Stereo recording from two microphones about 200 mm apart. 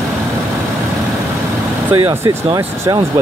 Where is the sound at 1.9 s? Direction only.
20° right (ahead or behind).